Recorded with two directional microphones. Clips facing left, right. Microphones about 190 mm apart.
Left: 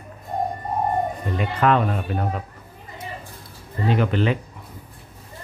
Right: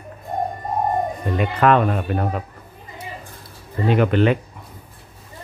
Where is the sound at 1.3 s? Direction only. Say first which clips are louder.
Right 3 dB; 60° right (ahead or behind).